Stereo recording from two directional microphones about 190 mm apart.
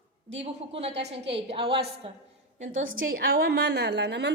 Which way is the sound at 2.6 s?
45° right (ahead or behind).